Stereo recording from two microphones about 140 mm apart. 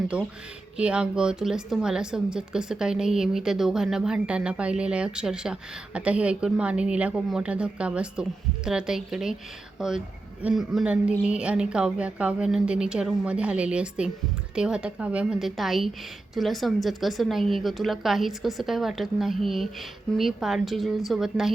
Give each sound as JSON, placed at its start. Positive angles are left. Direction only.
{"t": 0.1, "sound": "a woman's voice", "side_deg": -10}
{"t": 10.4, "sound": "a woman's voice", "side_deg": -5}